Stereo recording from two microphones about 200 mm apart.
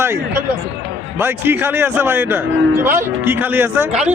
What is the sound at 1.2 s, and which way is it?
A man's voice, 10° right (ahead or behind).